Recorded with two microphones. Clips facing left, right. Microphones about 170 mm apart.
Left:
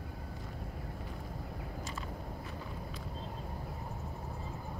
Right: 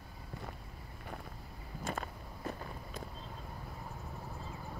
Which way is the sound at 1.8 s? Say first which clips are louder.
Right 2 dB; 55° right (ahead or behind).